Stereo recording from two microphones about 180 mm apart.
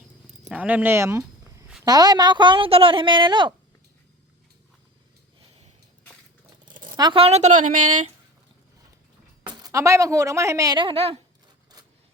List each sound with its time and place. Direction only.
0.4 s a woman's voice: 5° right (ahead or behind); by 3.5 s 25° right (ahead or behind)
6.8 s speech: 25° right (ahead or behind); by 8.1 s 40° right (ahead or behind)
9.5 s a woman's voice: 20° right (ahead or behind)